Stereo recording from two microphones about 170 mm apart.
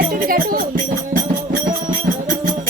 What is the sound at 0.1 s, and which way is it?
Music, 55° right (ahead or behind).